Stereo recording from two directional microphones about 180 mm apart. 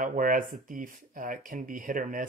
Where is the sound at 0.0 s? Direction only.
50° right (ahead or behind).